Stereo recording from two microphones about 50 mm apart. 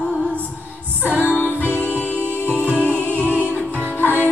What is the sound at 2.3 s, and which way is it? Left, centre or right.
Music, left.